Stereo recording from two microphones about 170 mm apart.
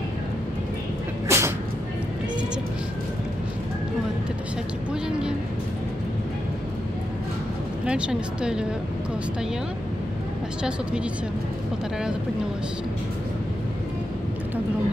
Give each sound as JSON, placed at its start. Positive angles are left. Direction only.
{"t": 1.3, "sound": "a sound", "side_deg": -15}
{"t": 7.8, "sound": "speech", "side_deg": -5}
{"t": 10.6, "sound": "speech", "side_deg": -5}